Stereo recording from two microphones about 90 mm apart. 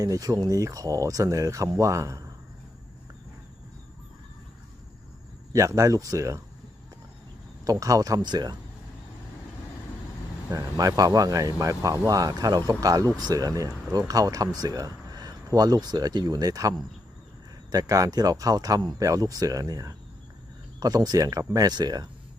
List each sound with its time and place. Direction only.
0.0 s speech: 40° right (ahead or behind)
5.5 s speech: 35° right (ahead or behind)
7.6 s speech: 40° right (ahead or behind)
10.5 s speech: 40° right (ahead or behind)